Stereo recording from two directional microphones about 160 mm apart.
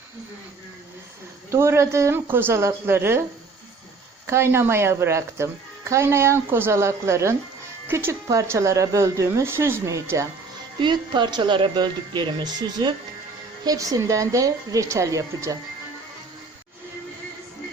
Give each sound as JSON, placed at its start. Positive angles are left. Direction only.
{"t": 1.5, "sound": "speech", "side_deg": -15}
{"t": 4.3, "sound": "speech", "side_deg": -15}
{"t": 10.8, "sound": "speech", "side_deg": -30}